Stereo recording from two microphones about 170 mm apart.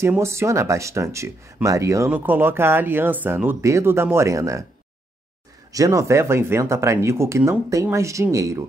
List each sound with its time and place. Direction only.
0.0 s speech: 15° right (ahead or behind)
5.7 s speech: 20° right (ahead or behind)